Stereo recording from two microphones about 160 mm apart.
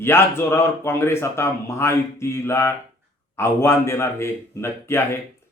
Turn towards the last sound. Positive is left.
turn(degrees=15)  # may be behind; listen again after turning